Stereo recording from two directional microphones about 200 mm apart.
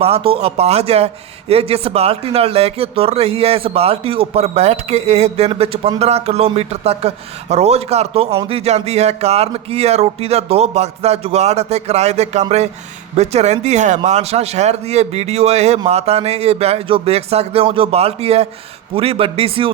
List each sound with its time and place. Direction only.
0.0 s a man's voice: 30° right (ahead or behind)